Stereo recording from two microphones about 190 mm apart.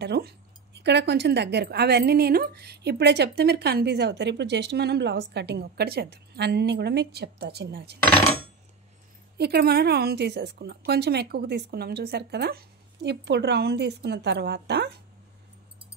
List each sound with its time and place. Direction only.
0.0 s speech: 60° right (ahead or behind)
9.4 s speech: 55° right (ahead or behind)